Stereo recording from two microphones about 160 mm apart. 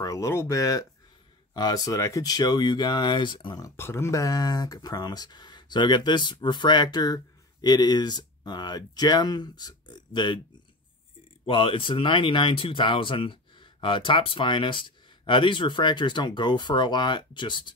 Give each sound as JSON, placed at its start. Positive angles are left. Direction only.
{"t": 0.0, "sound": "speech", "side_deg": 20}
{"t": 11.4, "sound": "speech", "side_deg": 35}